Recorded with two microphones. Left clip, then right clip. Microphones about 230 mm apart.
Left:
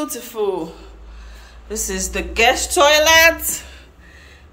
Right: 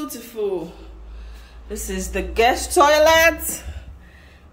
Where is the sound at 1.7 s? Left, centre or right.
Centre.